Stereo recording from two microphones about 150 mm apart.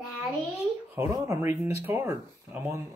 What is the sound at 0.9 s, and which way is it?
Speech, 20° right (ahead or behind).